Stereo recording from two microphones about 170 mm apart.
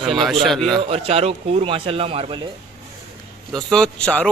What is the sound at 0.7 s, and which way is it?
Speech, 35° right (ahead or behind).